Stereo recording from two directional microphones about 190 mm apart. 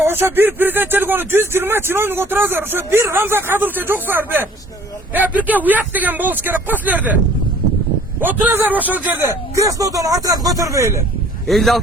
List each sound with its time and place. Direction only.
0.0 s speech: 10° right (ahead or behind)
8.2 s speech: 10° right (ahead or behind)
11.4 s speech: centre (ahead or behind)